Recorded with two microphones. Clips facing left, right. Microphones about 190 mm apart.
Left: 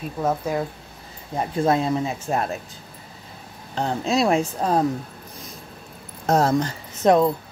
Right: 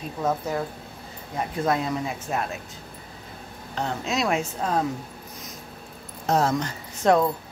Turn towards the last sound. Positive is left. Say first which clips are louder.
# left 3 dB
turn(degrees=20)  # may be behind; listen again after turning